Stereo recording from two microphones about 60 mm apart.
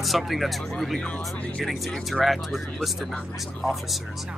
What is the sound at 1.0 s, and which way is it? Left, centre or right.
Speech, centre.